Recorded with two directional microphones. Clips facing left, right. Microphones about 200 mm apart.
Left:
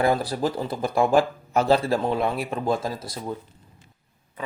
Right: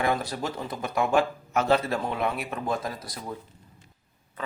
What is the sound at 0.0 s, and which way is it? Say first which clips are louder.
Speech: left 5 dB; 35° left (ahead or behind).